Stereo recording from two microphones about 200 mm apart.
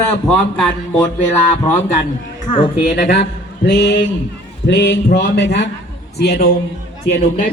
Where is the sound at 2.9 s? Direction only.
50° left (ahead or behind).